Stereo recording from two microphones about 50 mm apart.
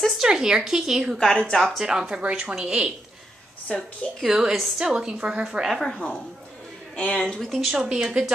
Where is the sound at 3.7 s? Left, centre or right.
Centre.